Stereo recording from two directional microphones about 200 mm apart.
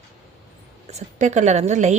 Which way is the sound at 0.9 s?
35° right (ahead or behind).